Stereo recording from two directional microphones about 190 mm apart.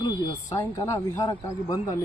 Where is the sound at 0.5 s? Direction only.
15° left (ahead or behind).